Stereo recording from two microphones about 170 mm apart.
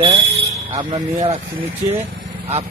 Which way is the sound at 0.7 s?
25° right (ahead or behind).